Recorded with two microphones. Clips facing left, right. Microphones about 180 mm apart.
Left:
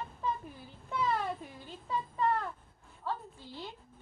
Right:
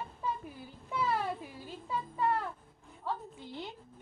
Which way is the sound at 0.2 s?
10° right (ahead or behind).